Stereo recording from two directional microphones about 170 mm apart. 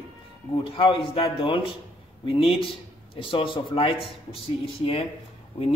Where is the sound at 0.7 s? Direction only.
30° left (ahead or behind).